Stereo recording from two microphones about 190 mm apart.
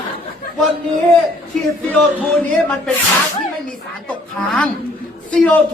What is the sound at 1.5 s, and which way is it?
A man's voice, centre (ahead or behind).